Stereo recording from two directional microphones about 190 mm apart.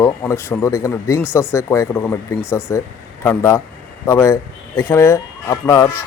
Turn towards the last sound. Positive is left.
turn(degrees=15)  # may be behind; listen again after turning